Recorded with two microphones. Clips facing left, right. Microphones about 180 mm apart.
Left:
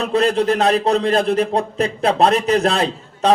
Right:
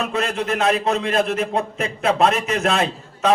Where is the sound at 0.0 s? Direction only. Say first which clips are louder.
Left 7 dB; 35° left (ahead or behind).